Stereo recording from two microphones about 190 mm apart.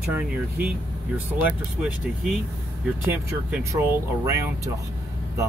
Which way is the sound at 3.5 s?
15° right (ahead or behind).